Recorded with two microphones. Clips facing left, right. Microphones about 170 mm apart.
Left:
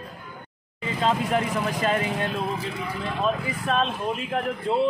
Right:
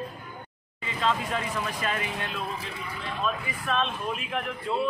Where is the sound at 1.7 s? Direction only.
35° left (ahead or behind).